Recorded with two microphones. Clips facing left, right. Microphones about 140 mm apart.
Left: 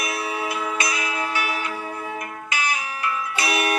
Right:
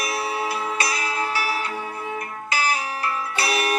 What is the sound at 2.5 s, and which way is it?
Music, 35° right (ahead or behind).